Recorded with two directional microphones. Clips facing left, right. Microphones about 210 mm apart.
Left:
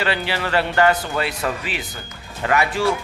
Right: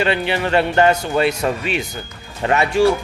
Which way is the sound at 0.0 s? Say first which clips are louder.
Right 4 dB; 20° right (ahead or behind).